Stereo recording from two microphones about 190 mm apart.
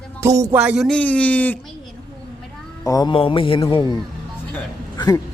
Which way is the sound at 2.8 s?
20° left (ahead or behind).